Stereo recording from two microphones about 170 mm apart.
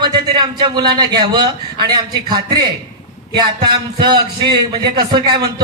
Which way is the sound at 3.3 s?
25° right (ahead or behind).